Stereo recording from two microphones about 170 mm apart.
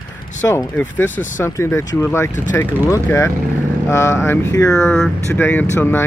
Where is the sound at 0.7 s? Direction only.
10° left (ahead or behind).